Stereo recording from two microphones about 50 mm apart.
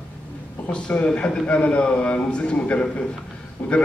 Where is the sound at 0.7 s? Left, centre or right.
Left.